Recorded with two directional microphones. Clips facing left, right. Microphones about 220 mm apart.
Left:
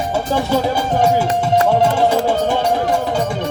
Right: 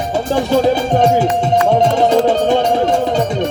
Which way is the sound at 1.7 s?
20° right (ahead or behind).